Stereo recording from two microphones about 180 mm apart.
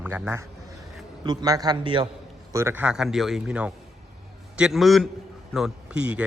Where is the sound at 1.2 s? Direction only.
20° right (ahead or behind).